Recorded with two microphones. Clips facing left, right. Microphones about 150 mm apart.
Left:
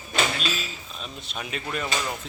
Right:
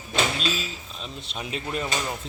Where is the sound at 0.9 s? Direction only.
25° right (ahead or behind).